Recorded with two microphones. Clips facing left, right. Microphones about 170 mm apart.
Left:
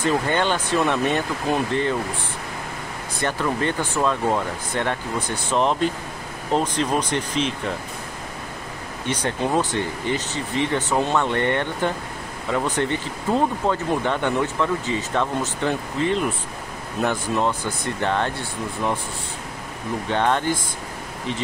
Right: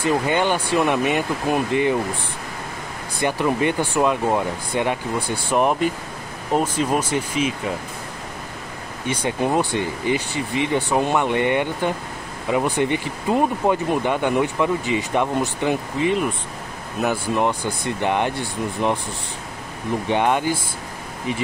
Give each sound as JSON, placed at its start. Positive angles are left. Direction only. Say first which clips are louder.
{"t": 0.0, "sound": "speech", "louder": "right 1 dB", "side_deg": -15}
{"t": 3.2, "sound": "speech", "louder": "right 3 dB", "side_deg": -15}
{"t": 9.0, "sound": "speech", "louder": "right 2 dB", "side_deg": -10}
{"t": 17.3, "sound": "speech", "louder": "right 2 dB", "side_deg": -15}
{"t": 20.1, "sound": "speech", "louder": "right 1 dB", "side_deg": -10}